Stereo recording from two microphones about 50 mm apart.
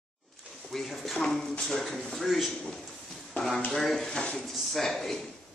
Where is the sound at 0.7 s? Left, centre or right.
Centre.